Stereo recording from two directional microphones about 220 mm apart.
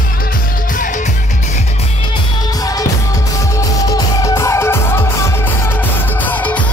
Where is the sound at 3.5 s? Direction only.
15° left (ahead or behind).